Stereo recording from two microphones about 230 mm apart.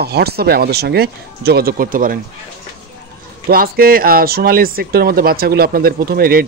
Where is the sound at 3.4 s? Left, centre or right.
Right.